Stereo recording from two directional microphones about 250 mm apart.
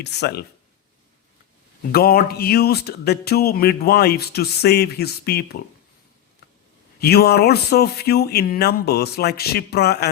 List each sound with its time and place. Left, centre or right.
0.0 s speech: left
1.9 s speech: left
7.0 s speech: left